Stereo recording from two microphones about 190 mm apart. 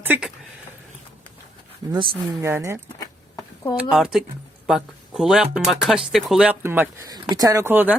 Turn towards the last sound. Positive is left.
turn(degrees=-10)  # may be behind; listen again after turning